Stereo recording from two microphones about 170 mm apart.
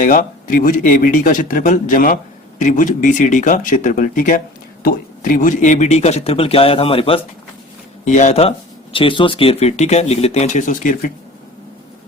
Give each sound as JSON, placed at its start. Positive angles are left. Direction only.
{"t": 0.0, "sound": "speech", "side_deg": 55}
{"t": 8.0, "sound": "speech", "side_deg": 45}